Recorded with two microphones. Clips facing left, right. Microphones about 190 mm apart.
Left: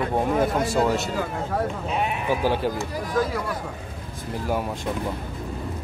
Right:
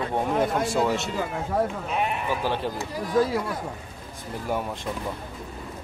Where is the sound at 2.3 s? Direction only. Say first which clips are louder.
Left 4 dB; 10° left (ahead or behind).